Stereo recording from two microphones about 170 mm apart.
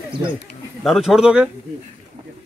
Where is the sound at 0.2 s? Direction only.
20° right (ahead or behind).